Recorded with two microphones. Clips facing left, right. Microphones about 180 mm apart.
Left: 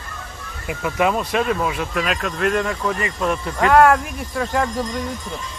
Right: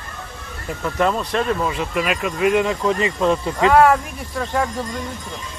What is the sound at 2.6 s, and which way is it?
Speech, 20° right (ahead or behind).